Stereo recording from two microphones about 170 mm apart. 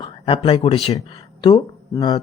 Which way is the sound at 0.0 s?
30° left (ahead or behind).